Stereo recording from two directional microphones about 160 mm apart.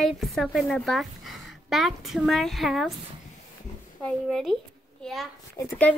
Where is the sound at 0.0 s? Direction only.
Centre (ahead or behind).